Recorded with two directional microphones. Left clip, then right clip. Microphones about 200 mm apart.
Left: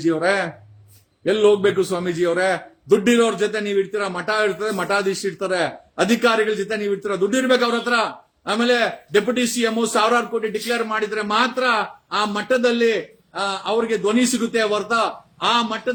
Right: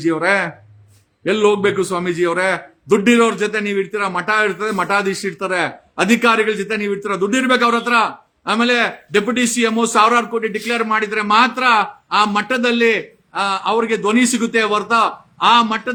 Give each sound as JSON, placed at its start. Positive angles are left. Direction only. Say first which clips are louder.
{"t": 0.0, "sound": "a man's voice", "louder": "right 3 dB", "side_deg": -15}